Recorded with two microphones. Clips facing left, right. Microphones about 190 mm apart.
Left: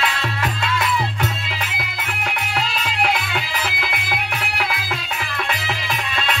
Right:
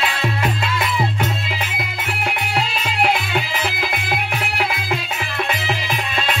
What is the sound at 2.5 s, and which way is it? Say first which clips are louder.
Music: right 2 dB; 25° right (ahead or behind).